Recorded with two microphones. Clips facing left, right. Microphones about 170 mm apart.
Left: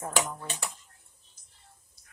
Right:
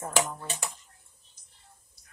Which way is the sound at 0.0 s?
5° right (ahead or behind).